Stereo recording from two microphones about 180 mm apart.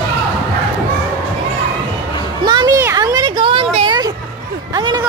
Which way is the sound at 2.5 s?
20° right (ahead or behind).